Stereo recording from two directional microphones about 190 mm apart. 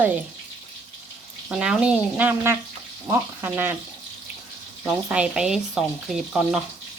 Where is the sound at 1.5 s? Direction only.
5° right (ahead or behind).